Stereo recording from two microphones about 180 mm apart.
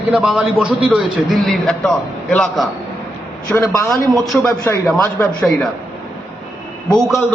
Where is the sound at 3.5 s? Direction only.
15° left (ahead or behind).